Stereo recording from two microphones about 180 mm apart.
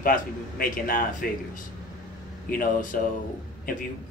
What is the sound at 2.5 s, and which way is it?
Speech, 50° left (ahead or behind).